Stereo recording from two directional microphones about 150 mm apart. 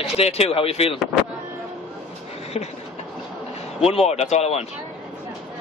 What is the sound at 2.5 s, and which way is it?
Speech, 40° left (ahead or behind).